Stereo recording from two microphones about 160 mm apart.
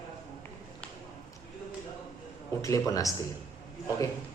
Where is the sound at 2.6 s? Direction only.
20° left (ahead or behind).